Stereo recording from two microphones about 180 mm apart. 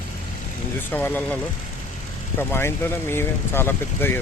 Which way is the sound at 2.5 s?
15° left (ahead or behind).